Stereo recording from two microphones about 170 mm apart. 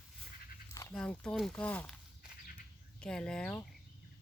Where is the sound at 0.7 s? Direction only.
15° left (ahead or behind).